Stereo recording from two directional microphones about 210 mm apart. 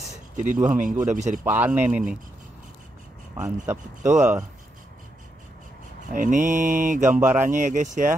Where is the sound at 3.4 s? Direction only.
10° right (ahead or behind).